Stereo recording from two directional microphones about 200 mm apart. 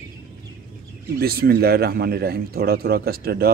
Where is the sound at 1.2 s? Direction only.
50° right (ahead or behind).